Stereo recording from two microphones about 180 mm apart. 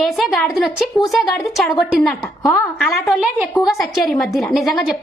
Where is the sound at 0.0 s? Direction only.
Centre (ahead or behind).